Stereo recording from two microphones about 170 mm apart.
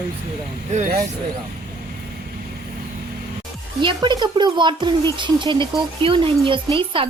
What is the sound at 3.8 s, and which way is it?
Speech, 25° right (ahead or behind).